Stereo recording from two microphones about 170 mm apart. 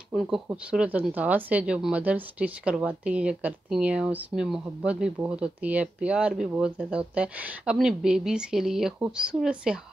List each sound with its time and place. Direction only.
0.1 s a woman's voice: centre (ahead or behind)